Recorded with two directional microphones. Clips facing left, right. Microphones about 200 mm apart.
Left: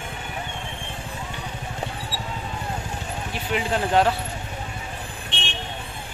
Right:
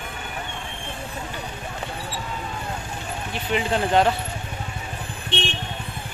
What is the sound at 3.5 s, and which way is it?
Speech, 5° left (ahead or behind).